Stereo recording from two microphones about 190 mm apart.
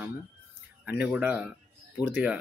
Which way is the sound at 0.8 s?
10° right (ahead or behind).